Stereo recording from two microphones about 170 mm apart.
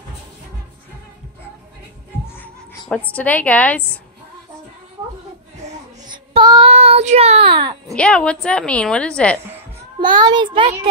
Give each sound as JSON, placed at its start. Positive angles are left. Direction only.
{"t": 3.1, "sound": "a woman's voice", "side_deg": 10}
{"t": 6.0, "sound": "child singing", "side_deg": -25}
{"t": 7.9, "sound": "a woman's voice", "side_deg": 5}
{"t": 9.9, "sound": "a child's voice", "side_deg": -25}